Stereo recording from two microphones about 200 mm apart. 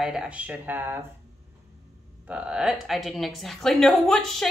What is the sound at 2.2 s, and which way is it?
Speech, 5° right (ahead or behind).